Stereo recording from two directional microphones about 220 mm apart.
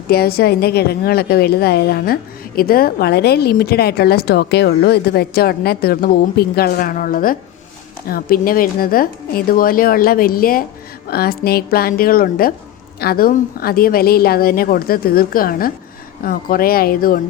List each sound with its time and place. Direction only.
0.1 s a woman's voice: 45° left (ahead or behind)